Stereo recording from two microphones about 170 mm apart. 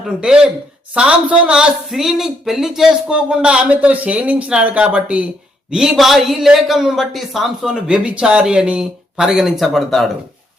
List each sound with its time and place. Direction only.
0.2 s a man's voice: 5° right (ahead or behind)